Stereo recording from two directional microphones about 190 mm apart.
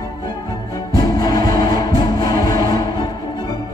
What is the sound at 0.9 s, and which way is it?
Music, 20° left (ahead or behind).